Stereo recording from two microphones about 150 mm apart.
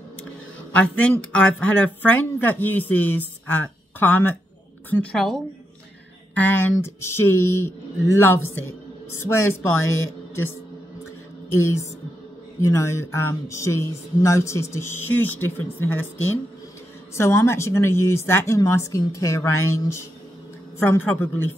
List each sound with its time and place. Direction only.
0.7 s a woman's voice: 10° left (ahead or behind)
6.3 s speech: 15° left (ahead or behind)
11.5 s speech: 20° left (ahead or behind)